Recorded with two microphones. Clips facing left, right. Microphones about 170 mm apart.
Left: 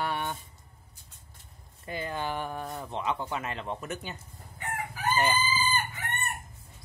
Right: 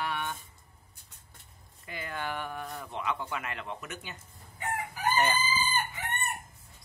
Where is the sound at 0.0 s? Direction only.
35° left (ahead or behind).